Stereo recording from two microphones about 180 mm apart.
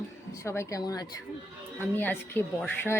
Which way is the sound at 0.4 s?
15° left (ahead or behind).